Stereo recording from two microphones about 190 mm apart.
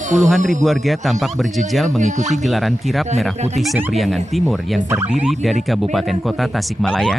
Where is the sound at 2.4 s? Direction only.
Centre (ahead or behind).